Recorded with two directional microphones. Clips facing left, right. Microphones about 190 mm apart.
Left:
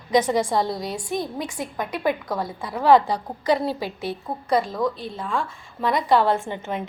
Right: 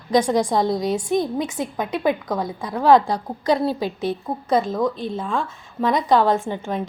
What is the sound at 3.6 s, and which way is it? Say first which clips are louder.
Speech: right 4 dB; 10° left (ahead or behind).